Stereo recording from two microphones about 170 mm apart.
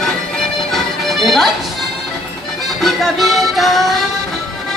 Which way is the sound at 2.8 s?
Centre (ahead or behind).